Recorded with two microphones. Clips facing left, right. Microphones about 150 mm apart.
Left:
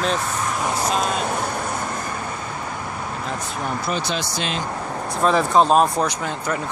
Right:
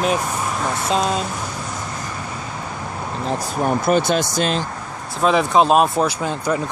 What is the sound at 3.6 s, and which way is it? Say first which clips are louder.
Speech: right 9 dB; 50° right (ahead or behind).